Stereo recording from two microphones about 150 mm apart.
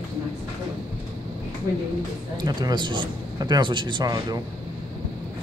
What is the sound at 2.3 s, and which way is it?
A man's voice, 25° right (ahead or behind).